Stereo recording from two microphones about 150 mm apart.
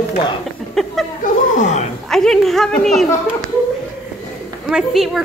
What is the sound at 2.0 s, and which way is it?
A woman's voice, 5° left (ahead or behind).